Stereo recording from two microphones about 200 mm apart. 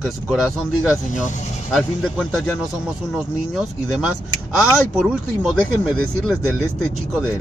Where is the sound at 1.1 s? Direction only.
40° left (ahead or behind).